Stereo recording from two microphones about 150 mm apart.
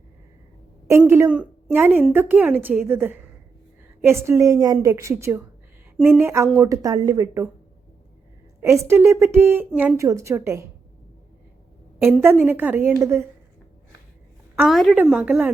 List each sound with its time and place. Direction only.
0.9 s a woman's voice: 15° right (ahead or behind)
8.8 s a woman's voice: 15° right (ahead or behind)
12.2 s a woman's voice: 15° right (ahead or behind)
14.7 s a woman's voice: centre (ahead or behind)